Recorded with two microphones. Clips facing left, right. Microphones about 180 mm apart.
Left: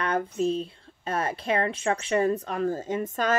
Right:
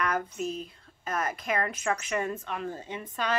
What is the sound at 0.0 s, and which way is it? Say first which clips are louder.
Speech: left 5 dB; 30° left (ahead or behind).